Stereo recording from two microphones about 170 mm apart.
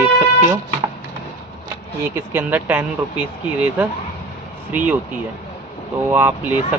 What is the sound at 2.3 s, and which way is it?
Speech, 10° right (ahead or behind).